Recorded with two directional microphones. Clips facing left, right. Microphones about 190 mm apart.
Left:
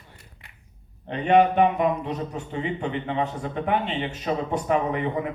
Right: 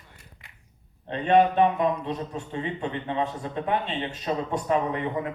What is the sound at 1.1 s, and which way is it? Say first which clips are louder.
Speech: left 1 dB; 15° left (ahead or behind).